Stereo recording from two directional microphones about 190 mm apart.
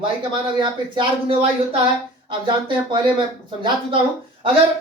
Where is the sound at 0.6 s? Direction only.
25° right (ahead or behind).